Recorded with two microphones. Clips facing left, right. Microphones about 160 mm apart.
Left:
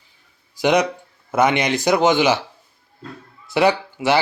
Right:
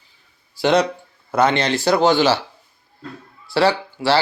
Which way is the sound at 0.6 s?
15° left (ahead or behind).